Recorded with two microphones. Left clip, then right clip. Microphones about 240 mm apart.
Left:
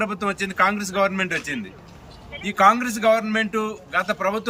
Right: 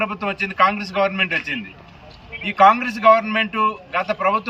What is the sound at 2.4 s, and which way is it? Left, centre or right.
A man's voice, centre.